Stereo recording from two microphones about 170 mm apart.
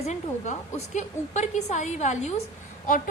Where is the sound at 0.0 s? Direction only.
45° left (ahead or behind).